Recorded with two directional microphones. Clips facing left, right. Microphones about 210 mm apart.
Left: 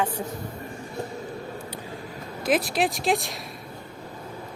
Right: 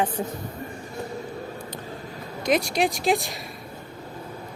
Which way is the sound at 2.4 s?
Centre (ahead or behind).